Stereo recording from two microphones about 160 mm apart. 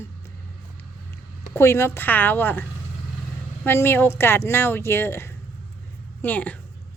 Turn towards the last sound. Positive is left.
turn(degrees=10)  # may be behind; listen again after turning